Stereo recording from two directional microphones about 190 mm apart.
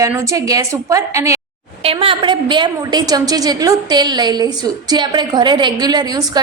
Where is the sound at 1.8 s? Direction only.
30° right (ahead or behind).